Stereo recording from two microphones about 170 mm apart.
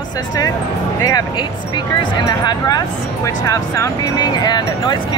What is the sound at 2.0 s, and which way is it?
Speech, 25° left (ahead or behind).